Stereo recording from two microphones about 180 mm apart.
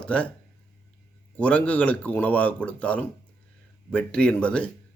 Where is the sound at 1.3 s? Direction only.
5° left (ahead or behind).